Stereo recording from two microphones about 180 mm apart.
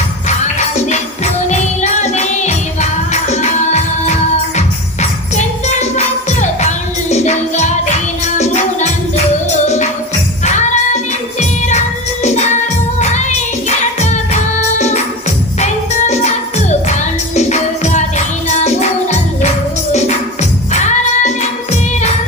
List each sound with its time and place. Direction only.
0.9 s music: 40° left (ahead or behind)